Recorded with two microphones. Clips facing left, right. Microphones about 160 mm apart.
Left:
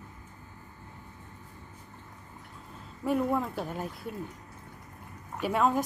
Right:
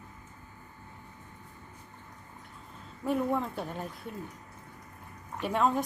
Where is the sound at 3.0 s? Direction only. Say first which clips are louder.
Left 1 dB; 5° left (ahead or behind).